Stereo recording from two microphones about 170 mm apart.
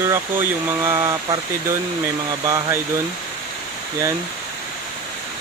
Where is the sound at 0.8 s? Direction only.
15° right (ahead or behind).